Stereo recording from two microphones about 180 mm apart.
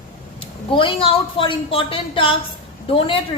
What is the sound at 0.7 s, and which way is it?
A woman's voice, 30° left (ahead or behind).